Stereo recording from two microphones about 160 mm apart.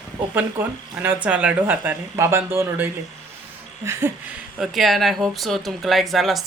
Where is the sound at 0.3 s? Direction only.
10° right (ahead or behind).